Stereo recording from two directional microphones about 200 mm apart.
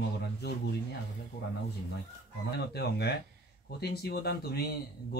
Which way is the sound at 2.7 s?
55° left (ahead or behind).